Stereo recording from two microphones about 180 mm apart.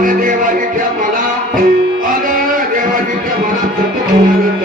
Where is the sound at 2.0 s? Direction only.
50° right (ahead or behind).